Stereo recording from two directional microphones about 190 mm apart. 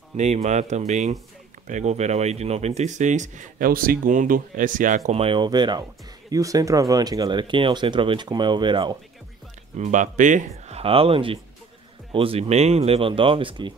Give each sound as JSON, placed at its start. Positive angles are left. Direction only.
{"t": 0.2, "sound": "speech", "side_deg": -35}
{"t": 9.8, "sound": "speech", "side_deg": -40}